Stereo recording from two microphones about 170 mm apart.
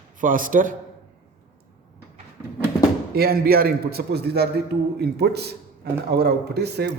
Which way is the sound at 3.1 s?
65° right (ahead or behind).